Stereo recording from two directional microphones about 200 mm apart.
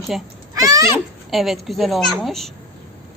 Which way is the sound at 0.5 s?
15° right (ahead or behind).